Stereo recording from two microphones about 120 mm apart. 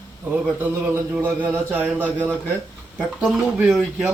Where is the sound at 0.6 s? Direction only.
15° right (ahead or behind).